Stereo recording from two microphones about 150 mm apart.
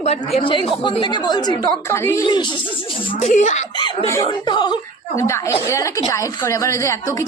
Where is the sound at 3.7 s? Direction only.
30° left (ahead or behind).